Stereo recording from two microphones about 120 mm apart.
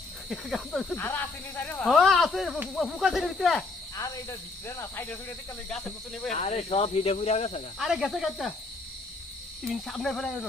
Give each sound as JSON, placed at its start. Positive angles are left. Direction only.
{"t": 0.3, "sound": "speech", "side_deg": 0}
{"t": 0.9, "sound": "speech", "side_deg": 15}
{"t": 1.9, "sound": "speech", "side_deg": 0}
{"t": 3.9, "sound": "speech", "side_deg": 25}
{"t": 5.6, "sound": "speech", "side_deg": 5}
{"t": 6.3, "sound": "speech", "side_deg": 65}
{"t": 7.8, "sound": "speech", "side_deg": -5}
{"t": 9.6, "sound": "speech", "side_deg": 0}